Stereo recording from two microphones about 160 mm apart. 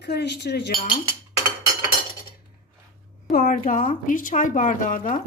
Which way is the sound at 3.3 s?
65° left (ahead or behind).